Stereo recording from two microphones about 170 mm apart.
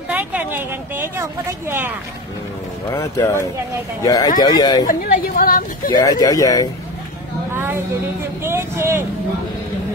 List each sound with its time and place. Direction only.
0.1 s a woman's voice: 10° right (ahead or behind)
2.9 s speech: 20° left (ahead or behind)
4.8 s speech: 55° left (ahead or behind)
6.0 s speech: 20° left (ahead or behind)
8.5 s speech: 15° right (ahead or behind)